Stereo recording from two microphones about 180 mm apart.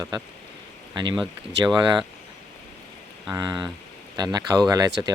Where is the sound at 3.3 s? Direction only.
20° right (ahead or behind).